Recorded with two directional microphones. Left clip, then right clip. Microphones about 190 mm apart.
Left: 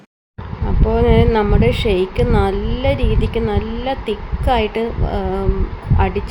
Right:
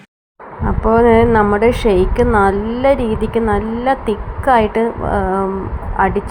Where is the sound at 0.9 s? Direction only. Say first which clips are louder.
Right 5 dB; 5° right (ahead or behind).